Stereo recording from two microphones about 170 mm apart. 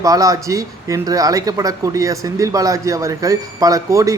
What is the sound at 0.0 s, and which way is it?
Speech, 20° right (ahead or behind).